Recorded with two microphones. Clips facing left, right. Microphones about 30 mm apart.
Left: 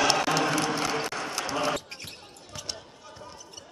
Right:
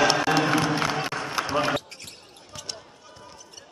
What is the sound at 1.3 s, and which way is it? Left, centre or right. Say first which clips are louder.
Basketball bounce: right 5 dB; right.